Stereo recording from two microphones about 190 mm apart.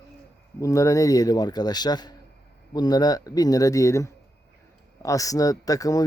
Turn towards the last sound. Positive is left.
turn(degrees=20)  # may be behind; listen again after turning